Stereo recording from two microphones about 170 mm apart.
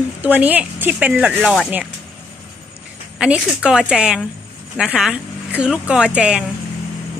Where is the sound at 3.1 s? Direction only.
5° right (ahead or behind).